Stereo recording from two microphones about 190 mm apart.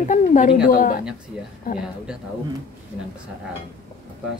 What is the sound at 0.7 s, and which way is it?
Speech, 50° left (ahead or behind).